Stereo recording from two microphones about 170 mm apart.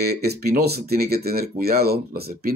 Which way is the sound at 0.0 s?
70° right (ahead or behind).